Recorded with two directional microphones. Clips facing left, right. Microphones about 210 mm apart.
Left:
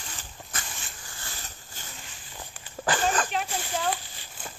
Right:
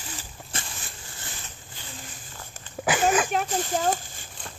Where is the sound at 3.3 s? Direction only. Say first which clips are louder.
Right 5 dB; 45° right (ahead or behind).